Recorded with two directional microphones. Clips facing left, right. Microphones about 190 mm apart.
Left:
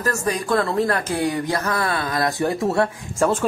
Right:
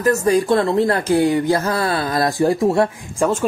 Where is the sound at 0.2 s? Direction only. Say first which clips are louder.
Right 6 dB; 30° right (ahead or behind).